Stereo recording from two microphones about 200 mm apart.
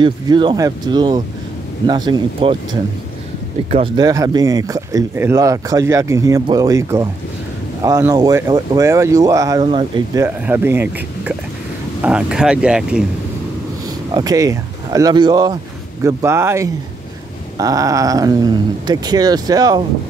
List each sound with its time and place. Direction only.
0.0 s speech: 25° right (ahead or behind)
3.7 s speech: 25° right (ahead or behind)
10.2 s speech: 10° right (ahead or behind)
14.1 s speech: 20° right (ahead or behind)